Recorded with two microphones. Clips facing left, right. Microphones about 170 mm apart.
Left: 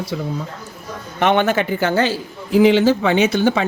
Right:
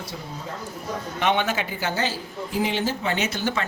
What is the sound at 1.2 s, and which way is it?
A man's voice, 55° left (ahead or behind).